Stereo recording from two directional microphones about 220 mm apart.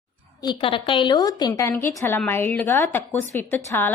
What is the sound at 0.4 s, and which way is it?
A woman's voice, 25° left (ahead or behind).